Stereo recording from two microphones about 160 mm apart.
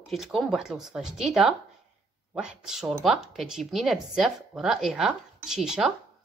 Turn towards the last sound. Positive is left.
turn(degrees=-5)  # may be behind; listen again after turning